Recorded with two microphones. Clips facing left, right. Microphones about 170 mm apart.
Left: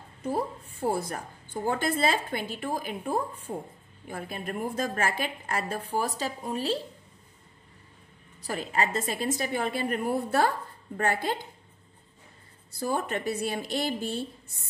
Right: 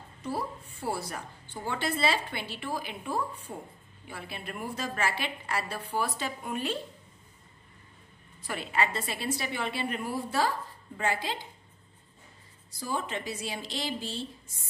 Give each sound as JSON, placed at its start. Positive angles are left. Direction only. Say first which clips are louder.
{"t": 0.2, "sound": "a woman's voice", "louder": "left 4 dB", "side_deg": 50}
{"t": 8.4, "sound": "a woman's voice", "louder": "left 2 dB", "side_deg": 40}
{"t": 12.7, "sound": "a woman's voice", "louder": "left 4 dB", "side_deg": 55}